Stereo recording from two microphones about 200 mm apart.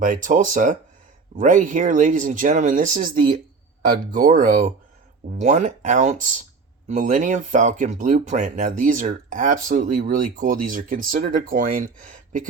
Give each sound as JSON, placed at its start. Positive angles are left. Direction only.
{"t": 0.0, "sound": "speech", "side_deg": -40}